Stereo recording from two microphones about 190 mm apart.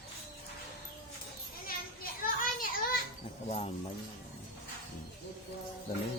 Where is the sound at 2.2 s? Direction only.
45° left (ahead or behind).